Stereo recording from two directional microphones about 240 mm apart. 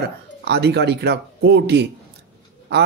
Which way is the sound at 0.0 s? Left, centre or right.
Right.